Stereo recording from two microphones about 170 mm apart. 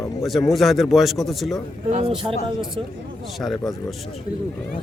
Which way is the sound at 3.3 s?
Centre (ahead or behind).